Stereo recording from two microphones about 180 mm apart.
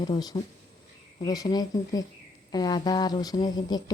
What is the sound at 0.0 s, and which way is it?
Speech, 20° left (ahead or behind).